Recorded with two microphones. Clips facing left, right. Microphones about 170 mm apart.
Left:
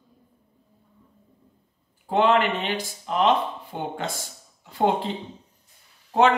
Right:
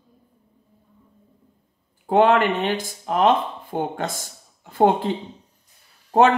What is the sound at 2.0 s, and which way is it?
Speech, 50° right (ahead or behind).